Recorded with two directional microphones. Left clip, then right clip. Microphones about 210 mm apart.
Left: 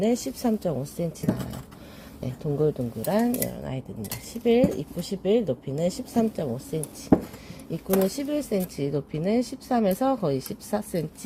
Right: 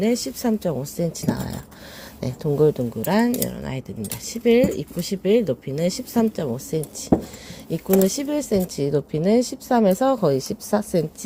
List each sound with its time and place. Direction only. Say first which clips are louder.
0.0 s a woman's voice: right 3 dB; 15° right (ahead or behind)
2.2 s speech: right 7 dB; 30° right (ahead or behind)